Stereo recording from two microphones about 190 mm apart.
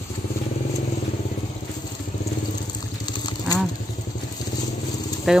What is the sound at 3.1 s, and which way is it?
Vehicle, 20° left (ahead or behind).